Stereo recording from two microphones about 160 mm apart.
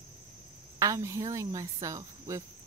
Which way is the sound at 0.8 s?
20° right (ahead or behind).